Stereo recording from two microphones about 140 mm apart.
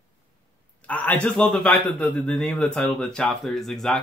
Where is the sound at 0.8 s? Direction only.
10° left (ahead or behind).